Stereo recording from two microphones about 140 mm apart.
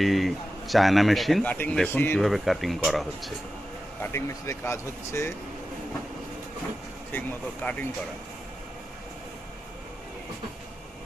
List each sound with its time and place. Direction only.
0.0 s speech: centre (ahead or behind); by 2.2 s 15° left (ahead or behind)
2.2 s speech: centre (ahead or behind)
4.0 s speech: 20° left (ahead or behind)
7.1 s speech: 10° left (ahead or behind)